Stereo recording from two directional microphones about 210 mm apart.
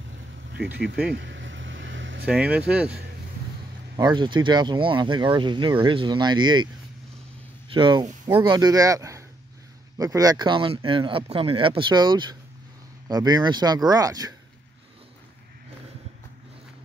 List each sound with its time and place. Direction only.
0.5 s speech: 50° right (ahead or behind)
1.1 s vehicle: 60° right (ahead or behind)
2.2 s speech: 5° right (ahead or behind)
3.9 s speech: 20° right (ahead or behind)
7.7 s speech: 20° right (ahead or behind)